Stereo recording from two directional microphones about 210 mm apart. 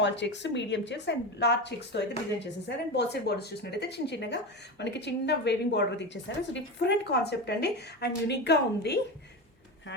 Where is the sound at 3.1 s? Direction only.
50° left (ahead or behind).